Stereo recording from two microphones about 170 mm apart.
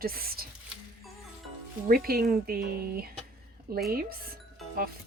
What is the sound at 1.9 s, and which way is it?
Speech, 60° right (ahead or behind).